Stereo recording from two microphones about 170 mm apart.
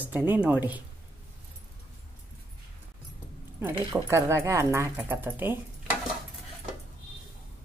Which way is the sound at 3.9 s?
15° right (ahead or behind).